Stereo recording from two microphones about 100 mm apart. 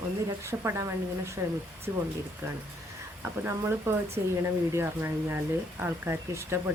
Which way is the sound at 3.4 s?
25° right (ahead or behind).